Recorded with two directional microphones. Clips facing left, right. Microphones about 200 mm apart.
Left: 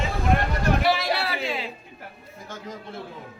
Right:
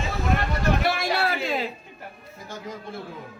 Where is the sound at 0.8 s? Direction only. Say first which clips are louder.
Left 1 dB; 50° right (ahead or behind).